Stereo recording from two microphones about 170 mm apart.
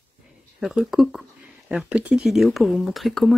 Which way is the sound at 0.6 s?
5° right (ahead or behind).